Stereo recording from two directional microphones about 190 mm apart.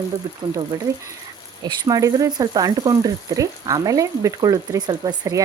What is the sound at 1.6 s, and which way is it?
Speech, 20° right (ahead or behind).